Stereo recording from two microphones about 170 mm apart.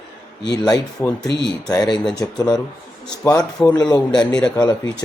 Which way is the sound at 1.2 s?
85° left.